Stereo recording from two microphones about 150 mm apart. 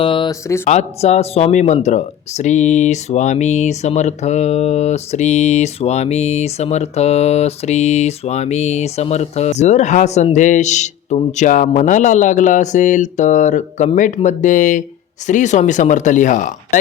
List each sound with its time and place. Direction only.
0.0 s a sound: 35° left (ahead or behind)
0.3 s speech: 20° left (ahead or behind)
0.7 s speech: 50° left (ahead or behind)